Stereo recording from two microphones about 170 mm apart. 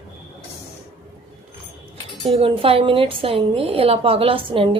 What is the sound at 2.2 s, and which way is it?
A woman's voice, 35° right (ahead or behind).